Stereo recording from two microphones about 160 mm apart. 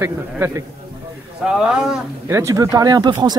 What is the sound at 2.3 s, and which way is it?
Speech, 15° right (ahead or behind).